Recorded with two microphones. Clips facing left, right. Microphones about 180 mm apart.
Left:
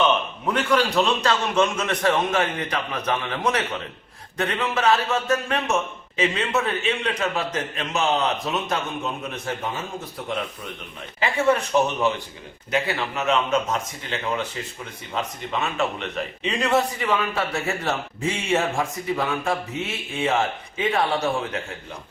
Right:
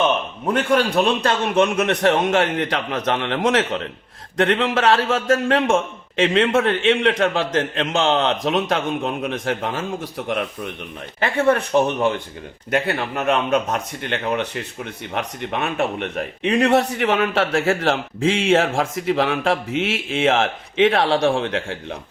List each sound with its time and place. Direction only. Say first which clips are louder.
0.4 s a man's voice: right 3 dB; 50° right (ahead or behind)
2.3 s a man's voice: right 5 dB; 90° right
11.2 s a man's voice: right 3 dB; 55° right (ahead or behind); by 21.9 s 85° right